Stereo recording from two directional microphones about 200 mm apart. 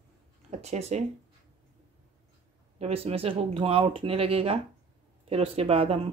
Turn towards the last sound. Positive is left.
turn(degrees=-30)  # may be behind; listen again after turning